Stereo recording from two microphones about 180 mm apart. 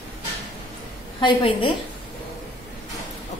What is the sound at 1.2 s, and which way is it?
Speech, 30° left (ahead or behind).